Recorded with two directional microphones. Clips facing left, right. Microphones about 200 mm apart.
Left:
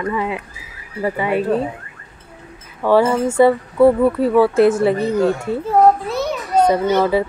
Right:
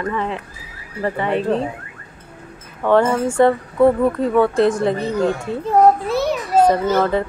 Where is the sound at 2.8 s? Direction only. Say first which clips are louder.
Left 1 dB; 5° left (ahead or behind).